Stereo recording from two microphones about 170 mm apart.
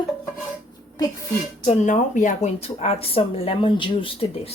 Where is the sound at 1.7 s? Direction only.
45° left (ahead or behind).